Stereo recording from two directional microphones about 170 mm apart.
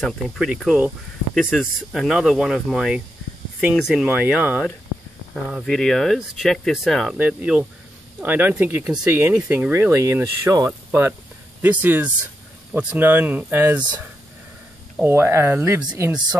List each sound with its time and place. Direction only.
0.0 s speech: centre (ahead or behind)
15.0 s speech: 15° right (ahead or behind)
15.8 s speech: 25° right (ahead or behind)